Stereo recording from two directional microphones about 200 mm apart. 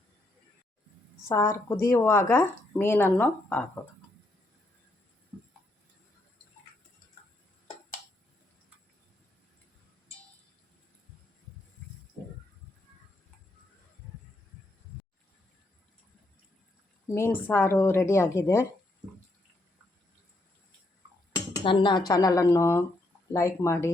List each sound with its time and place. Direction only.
1.3 s a woman's voice: 15° left (ahead or behind)
17.2 s a woman's voice: 10° left (ahead or behind)
21.6 s a woman's voice: 25° left (ahead or behind)